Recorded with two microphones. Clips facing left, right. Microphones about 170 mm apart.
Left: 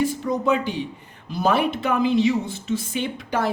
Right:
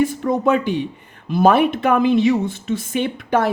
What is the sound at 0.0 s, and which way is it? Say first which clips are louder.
A woman's voice: right 5 dB; 55° right (ahead or behind).